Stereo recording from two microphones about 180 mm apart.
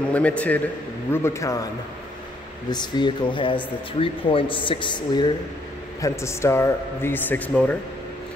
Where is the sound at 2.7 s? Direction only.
25° left (ahead or behind).